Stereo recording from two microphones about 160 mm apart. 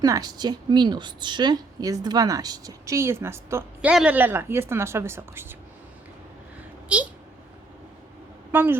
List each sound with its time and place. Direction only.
0.0 s a woman's voice: 25° right (ahead or behind)
3.8 s a woman's voice: 5° right (ahead or behind)
6.8 s speech: 10° right (ahead or behind)
8.5 s a woman's voice: 15° right (ahead or behind)